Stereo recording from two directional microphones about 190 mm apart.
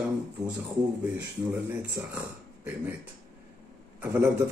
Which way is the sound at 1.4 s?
10° right (ahead or behind).